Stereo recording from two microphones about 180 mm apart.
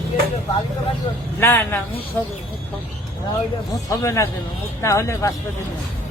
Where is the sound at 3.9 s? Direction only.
15° left (ahead or behind).